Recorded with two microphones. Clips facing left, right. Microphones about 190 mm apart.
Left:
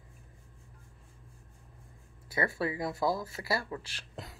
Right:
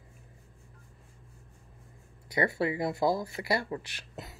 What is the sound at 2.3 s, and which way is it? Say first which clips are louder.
Speech: right 3 dB; 25° right (ahead or behind).